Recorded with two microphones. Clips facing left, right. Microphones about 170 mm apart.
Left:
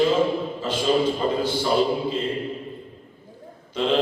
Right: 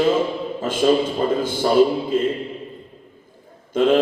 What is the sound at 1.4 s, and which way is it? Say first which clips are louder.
Speech: right 7 dB; 50° right (ahead or behind).